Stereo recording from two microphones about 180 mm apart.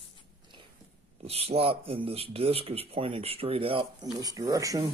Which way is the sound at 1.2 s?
35° right (ahead or behind).